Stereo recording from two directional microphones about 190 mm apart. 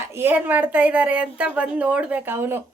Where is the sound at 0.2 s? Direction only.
10° right (ahead or behind).